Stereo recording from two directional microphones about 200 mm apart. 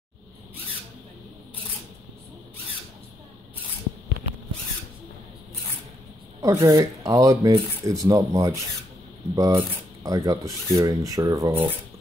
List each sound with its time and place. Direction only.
6.4 s speech: 15° right (ahead or behind)